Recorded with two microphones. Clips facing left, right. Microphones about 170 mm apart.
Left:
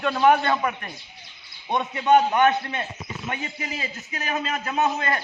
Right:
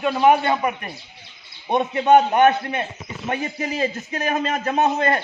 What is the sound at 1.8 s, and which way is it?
A man's voice, 45° right (ahead or behind).